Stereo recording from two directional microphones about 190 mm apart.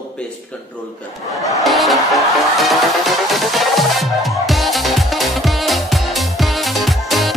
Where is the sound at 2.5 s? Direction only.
Centre (ahead or behind).